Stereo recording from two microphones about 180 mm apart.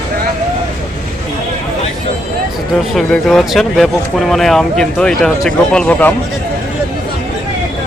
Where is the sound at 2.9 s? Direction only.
Centre (ahead or behind).